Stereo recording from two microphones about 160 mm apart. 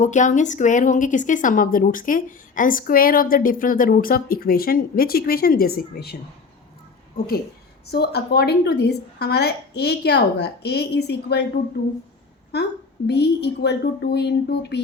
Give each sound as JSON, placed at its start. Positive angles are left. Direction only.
{"t": 0.0, "sound": "a woman's voice", "side_deg": 50}
{"t": 7.9, "sound": "a woman's voice", "side_deg": 90}
{"t": 13.1, "sound": "a woman's voice", "side_deg": 90}